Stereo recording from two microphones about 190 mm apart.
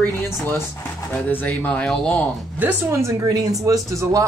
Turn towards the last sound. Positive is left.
turn(degrees=-15)  # may be behind; listen again after turning